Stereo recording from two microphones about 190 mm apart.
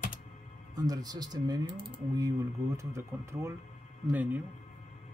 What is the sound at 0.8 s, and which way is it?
Speech, 20° right (ahead or behind).